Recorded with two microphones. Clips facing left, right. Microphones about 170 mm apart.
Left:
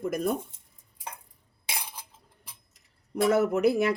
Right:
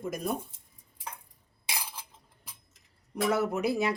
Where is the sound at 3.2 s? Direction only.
50° left (ahead or behind).